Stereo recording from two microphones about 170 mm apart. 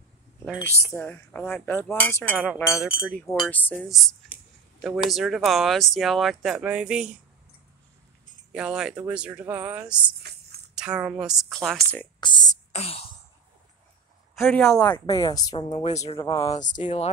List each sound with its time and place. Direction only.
0.9 s cutlery: 10° left (ahead or behind)
2.3 s speech: 5° right (ahead or behind)
3.3 s cutlery: 10° left (ahead or behind)
4.8 s speech: centre (ahead or behind)
8.5 s speech: 5° right (ahead or behind)
12.2 s speech: 25° left (ahead or behind)
12.7 s speech: 35° left (ahead or behind)
14.3 s a sound: centre (ahead or behind)
14.8 s speech: 20° left (ahead or behind)
15.7 s speech: 35° left (ahead or behind)
16.2 s speech: 25° left (ahead or behind)
16.6 s speech: 45° left (ahead or behind)